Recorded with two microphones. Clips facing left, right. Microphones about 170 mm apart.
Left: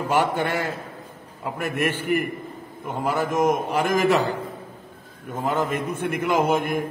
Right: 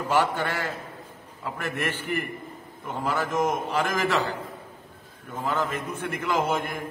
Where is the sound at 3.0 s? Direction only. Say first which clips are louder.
Left 4 dB; 15° left (ahead or behind).